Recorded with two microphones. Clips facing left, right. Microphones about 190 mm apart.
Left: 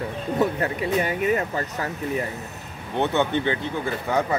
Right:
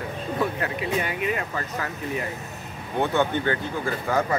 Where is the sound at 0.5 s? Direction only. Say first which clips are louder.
Left 3 dB; 40° left (ahead or behind).